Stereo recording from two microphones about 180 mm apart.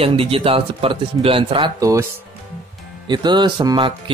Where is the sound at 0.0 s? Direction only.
30° right (ahead or behind).